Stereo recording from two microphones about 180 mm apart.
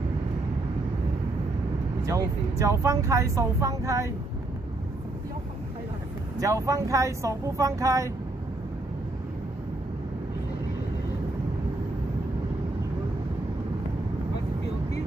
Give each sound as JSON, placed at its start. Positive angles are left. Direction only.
{"t": 2.0, "sound": "speech", "side_deg": -15}
{"t": 6.3, "sound": "speech", "side_deg": -20}